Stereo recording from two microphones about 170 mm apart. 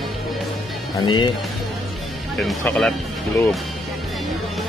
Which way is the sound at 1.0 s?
25° left (ahead or behind).